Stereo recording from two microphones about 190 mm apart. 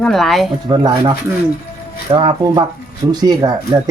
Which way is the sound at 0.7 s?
25° right (ahead or behind).